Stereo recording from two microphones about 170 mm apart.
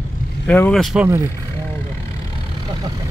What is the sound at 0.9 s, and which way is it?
Speech, 15° right (ahead or behind).